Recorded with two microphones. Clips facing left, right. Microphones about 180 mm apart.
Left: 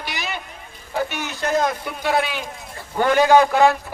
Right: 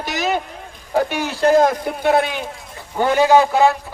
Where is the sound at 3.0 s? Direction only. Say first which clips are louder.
Right 1 dB; 15° right (ahead or behind).